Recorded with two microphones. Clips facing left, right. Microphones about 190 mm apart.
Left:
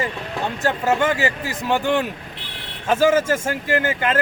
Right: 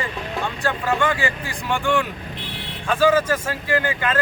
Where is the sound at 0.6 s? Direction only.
40° left (ahead or behind).